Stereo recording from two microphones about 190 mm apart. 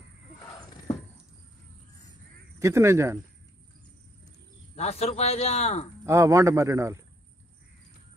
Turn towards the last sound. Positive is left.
turn(degrees=-15)  # may be behind; listen again after turning